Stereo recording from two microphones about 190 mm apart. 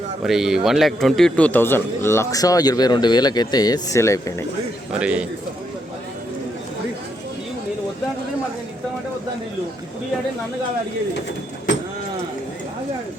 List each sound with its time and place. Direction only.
0.2 s a man's voice: centre (ahead or behind); by 4.4 s 15° left (ahead or behind)
4.9 s speech: 5° right (ahead or behind)